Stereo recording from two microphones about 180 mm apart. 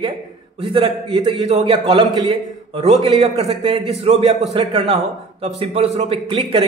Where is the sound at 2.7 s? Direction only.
35° right (ahead or behind).